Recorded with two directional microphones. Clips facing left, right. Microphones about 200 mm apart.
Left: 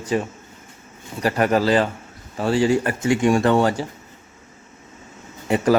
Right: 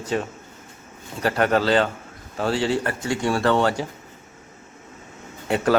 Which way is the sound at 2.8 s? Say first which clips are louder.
Left 5 dB; 15° left (ahead or behind).